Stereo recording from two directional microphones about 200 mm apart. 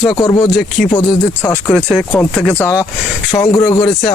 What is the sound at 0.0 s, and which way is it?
Speech, 20° left (ahead or behind).